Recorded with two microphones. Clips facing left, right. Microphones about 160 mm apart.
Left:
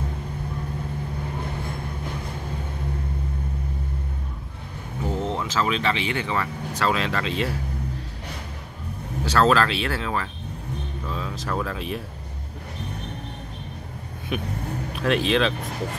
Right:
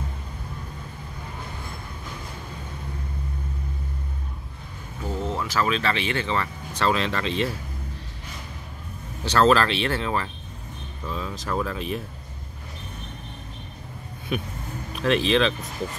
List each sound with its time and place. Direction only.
5.2 s speech: 20° left (ahead or behind); by 7.4 s 5° left (ahead or behind)
9.2 s speech: centre (ahead or behind)
14.3 s speech: centre (ahead or behind)